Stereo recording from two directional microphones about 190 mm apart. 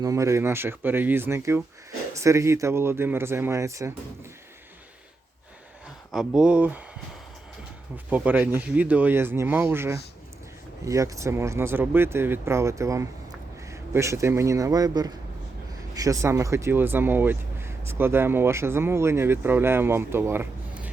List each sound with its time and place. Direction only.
0.0 s speech: 15° right (ahead or behind)
6.1 s speech: centre (ahead or behind)
7.9 s speech: 10° right (ahead or behind)